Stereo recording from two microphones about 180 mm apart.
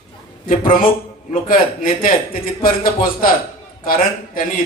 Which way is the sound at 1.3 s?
50° left (ahead or behind).